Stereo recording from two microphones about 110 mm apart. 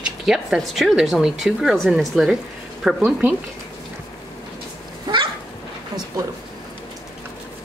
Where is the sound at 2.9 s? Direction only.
15° right (ahead or behind).